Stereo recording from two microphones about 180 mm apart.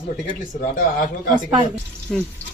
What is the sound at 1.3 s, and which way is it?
Speech, 30° right (ahead or behind).